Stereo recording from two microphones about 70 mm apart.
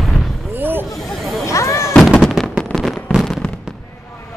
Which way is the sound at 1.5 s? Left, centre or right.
Left.